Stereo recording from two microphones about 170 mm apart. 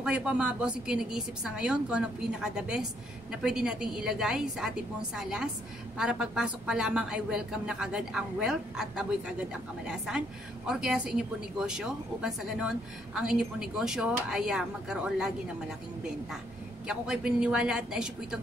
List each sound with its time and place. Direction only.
0.0 s a woman's voice: 5° right (ahead or behind)
16.8 s a woman's voice: 5° right (ahead or behind)